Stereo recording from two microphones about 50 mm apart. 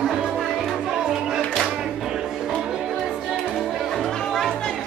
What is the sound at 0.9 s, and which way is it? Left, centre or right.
Music, centre.